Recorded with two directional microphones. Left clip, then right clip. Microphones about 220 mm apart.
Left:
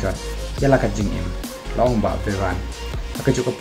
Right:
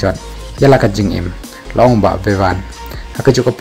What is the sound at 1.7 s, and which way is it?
Speech, 40° right (ahead or behind).